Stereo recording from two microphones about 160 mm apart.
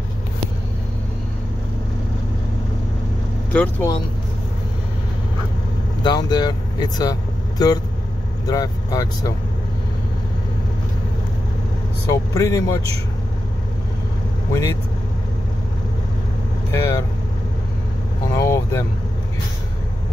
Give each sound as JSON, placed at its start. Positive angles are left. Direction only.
{"t": 3.5, "sound": "speech", "side_deg": 15}
{"t": 6.0, "sound": "speech", "side_deg": 25}
{"t": 12.1, "sound": "speech", "side_deg": 20}
{"t": 14.5, "sound": "speech", "side_deg": 20}
{"t": 16.7, "sound": "speech", "side_deg": 20}
{"t": 18.3, "sound": "speech", "side_deg": 20}